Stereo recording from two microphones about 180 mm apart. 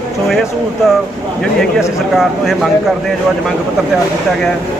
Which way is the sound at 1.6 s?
Centre (ahead or behind).